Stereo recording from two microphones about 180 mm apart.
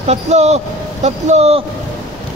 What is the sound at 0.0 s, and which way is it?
Speech, 35° right (ahead or behind).